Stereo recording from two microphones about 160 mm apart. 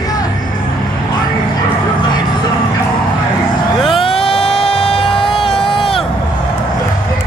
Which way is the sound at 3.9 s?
35° left (ahead or behind).